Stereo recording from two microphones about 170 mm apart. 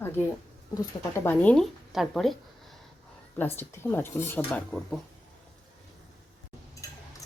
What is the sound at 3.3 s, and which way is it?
Speech, 10° left (ahead or behind).